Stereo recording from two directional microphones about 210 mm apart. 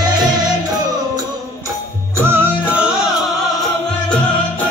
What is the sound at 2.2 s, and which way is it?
Music, 10° right (ahead or behind).